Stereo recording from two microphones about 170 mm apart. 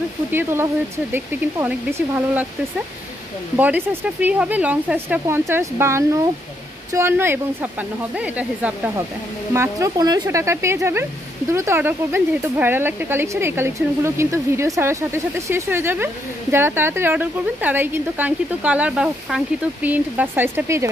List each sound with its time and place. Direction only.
0.3 s speech: 15° right (ahead or behind)
3.5 s speech: 10° right (ahead or behind)